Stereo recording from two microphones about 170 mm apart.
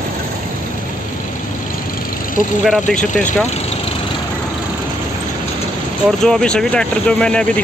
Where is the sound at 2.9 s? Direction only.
45° left (ahead or behind).